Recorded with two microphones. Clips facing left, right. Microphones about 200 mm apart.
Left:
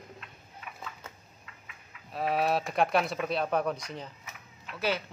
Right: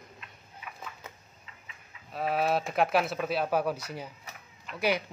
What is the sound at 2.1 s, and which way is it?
Speech, centre (ahead or behind).